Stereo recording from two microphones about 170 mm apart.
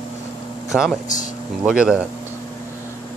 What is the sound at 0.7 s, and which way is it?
Speech, centre (ahead or behind).